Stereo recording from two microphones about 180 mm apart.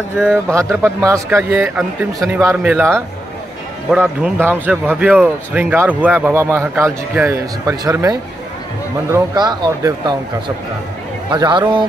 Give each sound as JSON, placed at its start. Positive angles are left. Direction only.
{"t": 0.2, "sound": "speech", "side_deg": 5}
{"t": 0.8, "sound": "speech", "side_deg": -15}
{"t": 4.0, "sound": "speech", "side_deg": -10}
{"t": 11.2, "sound": "speech", "side_deg": -25}